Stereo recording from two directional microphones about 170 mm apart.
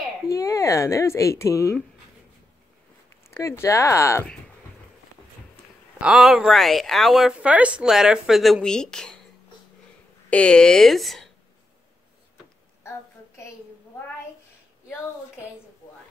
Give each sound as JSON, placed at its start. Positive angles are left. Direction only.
{"t": 0.3, "sound": "speech", "side_deg": 20}
{"t": 3.3, "sound": "speech", "side_deg": 15}
{"t": 5.9, "sound": "speech", "side_deg": -5}
{"t": 10.3, "sound": "speech", "side_deg": 5}